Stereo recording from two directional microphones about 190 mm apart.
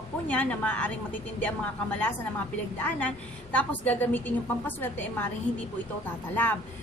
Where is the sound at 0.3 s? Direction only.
5° left (ahead or behind).